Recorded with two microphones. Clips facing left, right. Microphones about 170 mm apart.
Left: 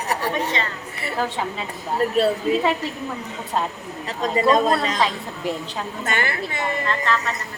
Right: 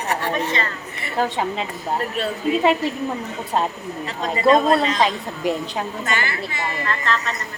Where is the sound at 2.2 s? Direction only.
40° left (ahead or behind).